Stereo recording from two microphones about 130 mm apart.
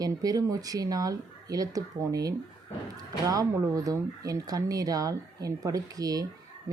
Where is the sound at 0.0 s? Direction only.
30° right (ahead or behind).